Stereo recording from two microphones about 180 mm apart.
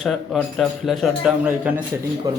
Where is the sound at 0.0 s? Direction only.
5° left (ahead or behind).